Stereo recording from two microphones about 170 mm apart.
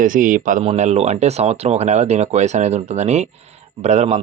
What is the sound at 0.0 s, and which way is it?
Speech, 50° right (ahead or behind).